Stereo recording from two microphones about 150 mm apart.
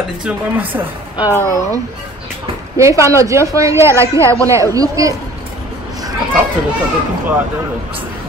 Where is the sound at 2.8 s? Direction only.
20° right (ahead or behind).